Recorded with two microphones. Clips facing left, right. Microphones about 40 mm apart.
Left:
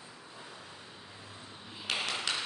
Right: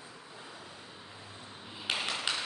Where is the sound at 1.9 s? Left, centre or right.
Centre.